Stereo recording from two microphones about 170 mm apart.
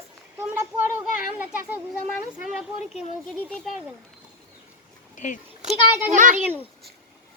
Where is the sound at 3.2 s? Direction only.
Centre (ahead or behind).